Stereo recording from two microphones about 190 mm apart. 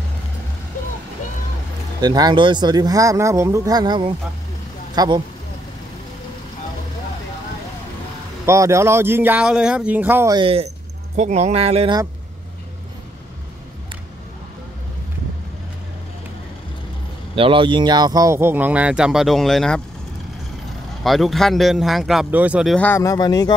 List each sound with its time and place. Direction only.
2.0 s speech: 20° right (ahead or behind)
8.5 s speech: 15° right (ahead or behind)
10.3 s speech: 30° right (ahead or behind)
17.4 s speech: 25° right (ahead or behind); by 19.8 s centre (ahead or behind)
21.0 s a man's voice: centre (ahead or behind)
22.8 s speech: 10° left (ahead or behind)